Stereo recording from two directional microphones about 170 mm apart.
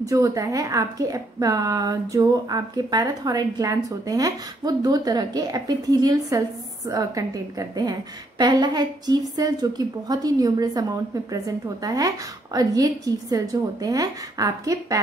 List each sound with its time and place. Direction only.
0.0 s a woman's voice: 20° right (ahead or behind)